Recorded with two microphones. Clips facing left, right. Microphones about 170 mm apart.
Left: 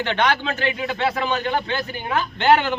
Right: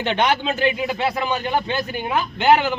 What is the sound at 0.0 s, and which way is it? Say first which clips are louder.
A man's voice: right 1 dB; 15° right (ahead or behind).